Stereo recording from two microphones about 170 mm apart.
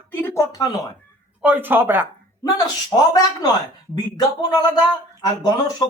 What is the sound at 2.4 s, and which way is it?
Speech, 20° left (ahead or behind).